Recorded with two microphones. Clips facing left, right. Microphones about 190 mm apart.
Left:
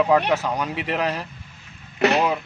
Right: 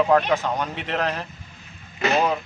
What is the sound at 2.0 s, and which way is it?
Speech, 70° left (ahead or behind).